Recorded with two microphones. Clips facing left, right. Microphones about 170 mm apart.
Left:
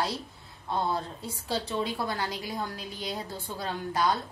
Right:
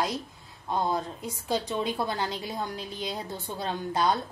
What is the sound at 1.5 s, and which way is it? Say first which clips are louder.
A woman's voice: right 2 dB; 15° right (ahead or behind).